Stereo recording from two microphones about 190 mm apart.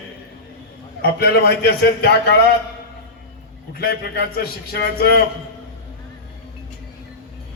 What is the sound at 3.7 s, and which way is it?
A man's voice, 55° left (ahead or behind).